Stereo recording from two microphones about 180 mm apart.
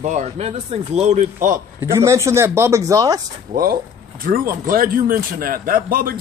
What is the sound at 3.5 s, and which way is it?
A man's voice, 55° right (ahead or behind).